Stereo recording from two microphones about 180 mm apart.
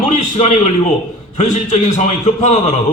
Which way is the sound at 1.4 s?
40° left (ahead or behind).